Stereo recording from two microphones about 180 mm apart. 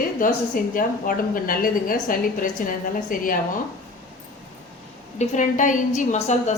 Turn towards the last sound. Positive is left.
turn(degrees=40)  # may be behind; listen again after turning